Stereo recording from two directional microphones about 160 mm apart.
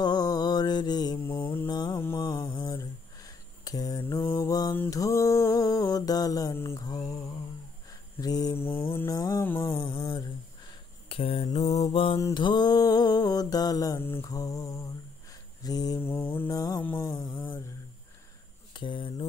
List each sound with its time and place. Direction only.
0.0 s mantra: 25° left (ahead or behind)
2.0 s a sound: 15° left (ahead or behind)
4.7 s mantra: 20° left (ahead or behind)
11.9 s mantra: 35° left (ahead or behind)
16.0 s mantra: 15° left (ahead or behind)
18.7 s a sound: 30° left (ahead or behind)